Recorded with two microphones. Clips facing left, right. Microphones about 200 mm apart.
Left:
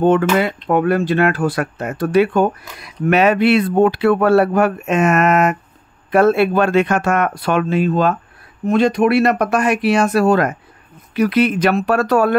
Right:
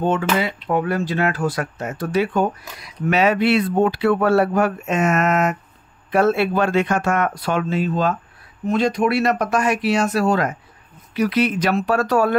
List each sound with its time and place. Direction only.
0.0 s speech: 60° left (ahead or behind)